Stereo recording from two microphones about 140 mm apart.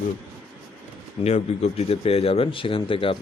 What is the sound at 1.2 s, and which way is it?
Speech, 50° left (ahead or behind).